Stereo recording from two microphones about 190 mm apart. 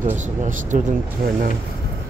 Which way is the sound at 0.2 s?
40° right (ahead or behind).